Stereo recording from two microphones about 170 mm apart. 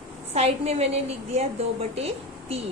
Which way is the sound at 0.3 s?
40° right (ahead or behind).